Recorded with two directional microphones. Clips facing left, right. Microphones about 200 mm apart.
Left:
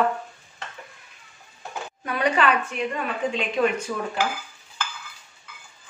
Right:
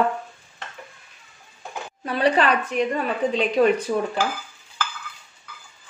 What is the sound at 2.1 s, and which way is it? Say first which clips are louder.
A woman's voice: right 2 dB; 30° right (ahead or behind).